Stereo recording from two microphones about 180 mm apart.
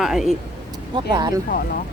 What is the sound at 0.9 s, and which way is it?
Speech, 25° right (ahead or behind).